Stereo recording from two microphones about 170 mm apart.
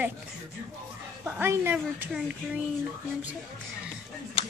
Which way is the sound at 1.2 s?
15° right (ahead or behind).